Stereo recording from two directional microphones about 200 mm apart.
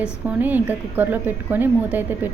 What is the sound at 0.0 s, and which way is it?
A woman's voice, 10° right (ahead or behind).